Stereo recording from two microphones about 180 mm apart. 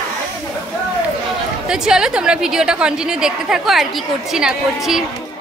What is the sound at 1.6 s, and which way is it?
A woman's voice, 5° right (ahead or behind).